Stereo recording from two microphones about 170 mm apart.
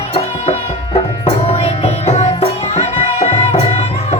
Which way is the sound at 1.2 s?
35° left (ahead or behind).